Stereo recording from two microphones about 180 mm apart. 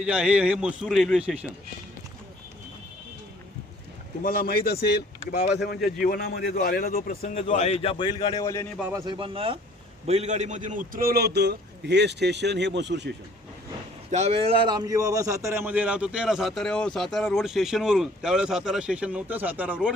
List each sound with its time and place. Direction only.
0.0 s a man's voice: 5° right (ahead or behind)
4.2 s speech: 50° left (ahead or behind)
7.3 s a man's voice: 45° left (ahead or behind)
8.8 s a man's voice: 15° right (ahead or behind)
9.0 s a man's voice: 30° right (ahead or behind); by 13.1 s 75° right (ahead or behind)
14.1 s a man's voice: 40° right (ahead or behind); by 19.9 s 10° right (ahead or behind)